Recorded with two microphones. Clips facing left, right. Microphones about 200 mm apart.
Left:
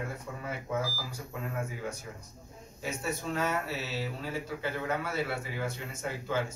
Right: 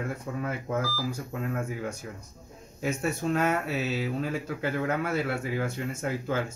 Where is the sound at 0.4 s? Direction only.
55° right (ahead or behind).